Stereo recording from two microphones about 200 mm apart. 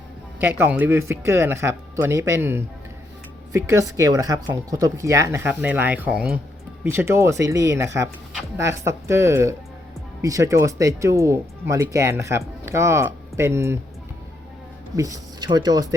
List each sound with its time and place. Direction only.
0.6 s speech: 10° right (ahead or behind)
14.9 s speech: 15° right (ahead or behind)